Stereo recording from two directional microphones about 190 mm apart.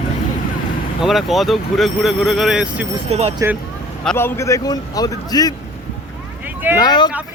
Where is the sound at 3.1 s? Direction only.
35° right (ahead or behind).